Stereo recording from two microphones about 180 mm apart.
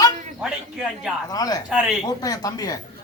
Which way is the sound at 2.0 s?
20° left (ahead or behind).